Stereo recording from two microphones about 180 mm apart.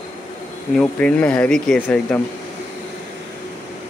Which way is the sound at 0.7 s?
5° left (ahead or behind).